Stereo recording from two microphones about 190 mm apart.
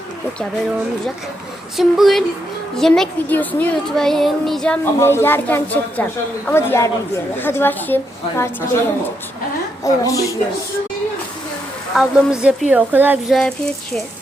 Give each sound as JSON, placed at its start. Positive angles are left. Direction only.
{"t": 1.7, "sound": "a child's voice", "side_deg": 0}
{"t": 9.8, "sound": "a woman's voice", "side_deg": 15}
{"t": 11.9, "sound": "a child's voice", "side_deg": -5}